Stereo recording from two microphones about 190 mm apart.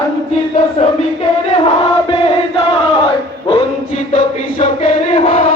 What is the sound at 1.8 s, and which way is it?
Chant, 30° left (ahead or behind).